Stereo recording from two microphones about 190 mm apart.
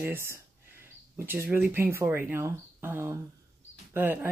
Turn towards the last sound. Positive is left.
turn(degrees=-10)  # may be behind; listen again after turning